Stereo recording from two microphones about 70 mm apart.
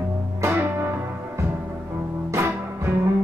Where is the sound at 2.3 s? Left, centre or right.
Right.